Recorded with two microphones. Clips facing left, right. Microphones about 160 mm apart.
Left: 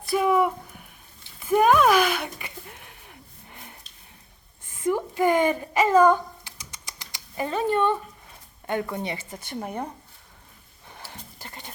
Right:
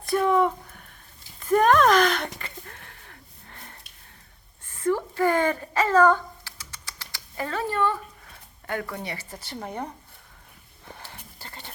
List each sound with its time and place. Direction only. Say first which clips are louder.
0.1 s a sound: even; 10° left (ahead or behind)
8.6 s a woman's voice: left 4 dB; 20° left (ahead or behind)
10.9 s horse: left 2 dB; 15° left (ahead or behind)